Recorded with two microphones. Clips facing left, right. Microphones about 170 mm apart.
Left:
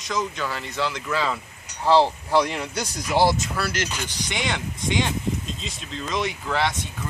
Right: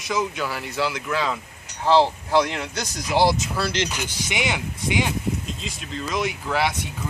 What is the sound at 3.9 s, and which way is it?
Speech, 10° right (ahead or behind).